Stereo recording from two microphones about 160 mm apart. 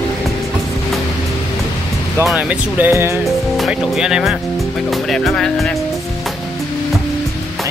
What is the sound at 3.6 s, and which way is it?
Speech, 5° right (ahead or behind).